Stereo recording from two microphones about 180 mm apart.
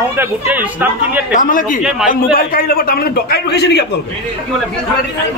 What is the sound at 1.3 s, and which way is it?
A man's voice, 50° left (ahead or behind).